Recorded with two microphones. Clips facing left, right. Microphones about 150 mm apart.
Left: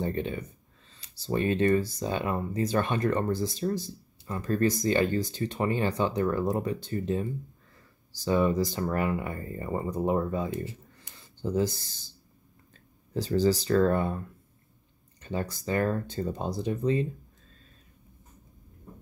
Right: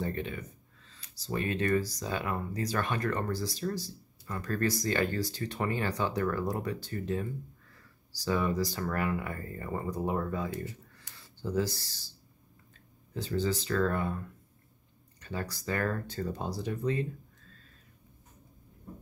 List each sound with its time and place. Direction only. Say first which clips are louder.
0.0 s speech: left 4 dB; 30° left (ahead or behind)
13.1 s speech: left 7 dB; 35° left (ahead or behind)